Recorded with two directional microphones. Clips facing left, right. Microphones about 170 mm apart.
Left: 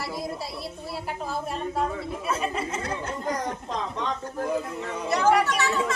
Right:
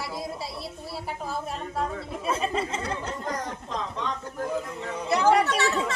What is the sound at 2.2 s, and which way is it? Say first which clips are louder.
Speech: right 2 dB; 30° right (ahead or behind).